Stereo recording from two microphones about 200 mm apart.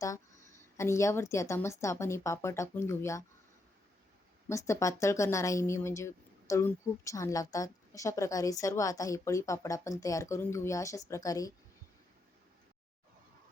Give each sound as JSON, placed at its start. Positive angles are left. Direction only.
{"t": 0.8, "sound": "a woman's voice", "side_deg": 15}
{"t": 4.4, "sound": "a woman's voice", "side_deg": 15}